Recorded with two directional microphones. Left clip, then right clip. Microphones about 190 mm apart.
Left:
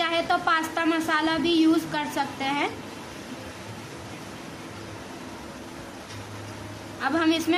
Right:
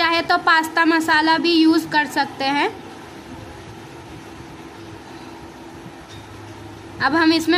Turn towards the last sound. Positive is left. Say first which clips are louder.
# right 7 dB
turn(degrees=-20)  # may be behind; listen again after turning